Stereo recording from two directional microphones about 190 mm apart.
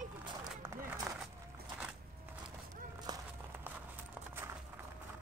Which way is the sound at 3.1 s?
20° right (ahead or behind).